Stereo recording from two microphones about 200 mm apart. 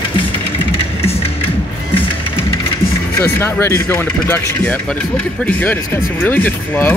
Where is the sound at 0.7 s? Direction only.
30° left (ahead or behind).